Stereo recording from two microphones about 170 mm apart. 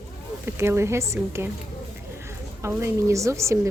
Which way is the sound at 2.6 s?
15° right (ahead or behind).